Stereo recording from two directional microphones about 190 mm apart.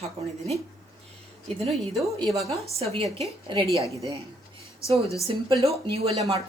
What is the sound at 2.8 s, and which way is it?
Speech, 30° right (ahead or behind).